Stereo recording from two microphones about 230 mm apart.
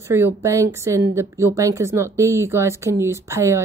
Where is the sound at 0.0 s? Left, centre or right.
Centre.